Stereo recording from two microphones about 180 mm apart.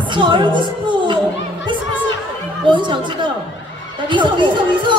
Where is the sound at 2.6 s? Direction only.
25° right (ahead or behind).